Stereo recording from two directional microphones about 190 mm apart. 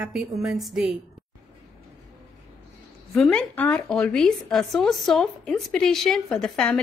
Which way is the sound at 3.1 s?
5° left (ahead or behind).